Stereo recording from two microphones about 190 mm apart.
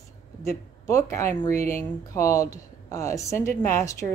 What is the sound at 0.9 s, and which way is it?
Speech, 15° left (ahead or behind).